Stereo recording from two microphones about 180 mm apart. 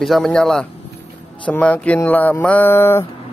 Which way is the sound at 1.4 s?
5° left (ahead or behind).